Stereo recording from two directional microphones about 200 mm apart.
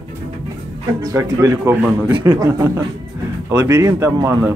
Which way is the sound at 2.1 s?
20° right (ahead or behind).